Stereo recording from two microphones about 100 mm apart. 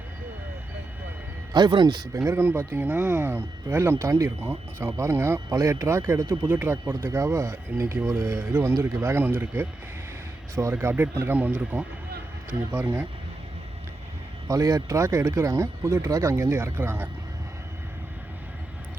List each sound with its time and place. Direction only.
1.5 s speech: 45° right (ahead or behind)
2.1 s speech: 25° right (ahead or behind)
14.4 s speech: 35° right (ahead or behind); by 17.1 s 20° right (ahead or behind)